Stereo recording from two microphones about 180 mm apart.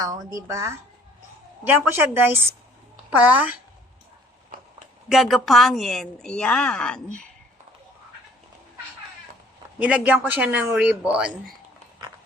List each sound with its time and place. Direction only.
0.0 s speech: 20° right (ahead or behind)
5.0 s a woman's voice: centre (ahead or behind)
9.7 s a woman's voice: 5° right (ahead or behind)